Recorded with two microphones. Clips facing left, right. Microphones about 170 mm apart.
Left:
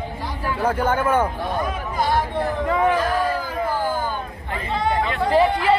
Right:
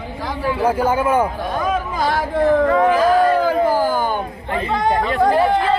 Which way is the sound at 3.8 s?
85° right.